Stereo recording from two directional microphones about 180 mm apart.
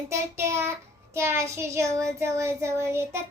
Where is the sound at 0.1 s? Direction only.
15° right (ahead or behind).